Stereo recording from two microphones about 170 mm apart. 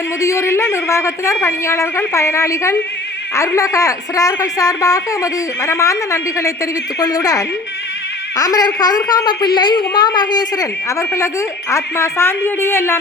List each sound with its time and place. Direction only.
0.2 s a woman's voice: 15° left (ahead or behind)